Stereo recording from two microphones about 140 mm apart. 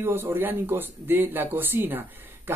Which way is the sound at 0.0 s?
15° right (ahead or behind).